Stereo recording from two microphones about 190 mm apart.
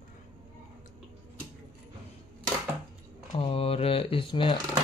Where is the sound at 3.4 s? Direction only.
30° left (ahead or behind).